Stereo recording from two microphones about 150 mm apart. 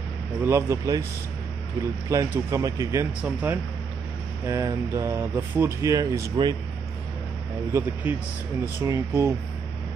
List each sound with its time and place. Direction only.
0.5 s speech: 20° right (ahead or behind)
2.0 s speech: 20° right (ahead or behind)
3.2 s speech: 10° right (ahead or behind)
7.7 s speech: 15° right (ahead or behind)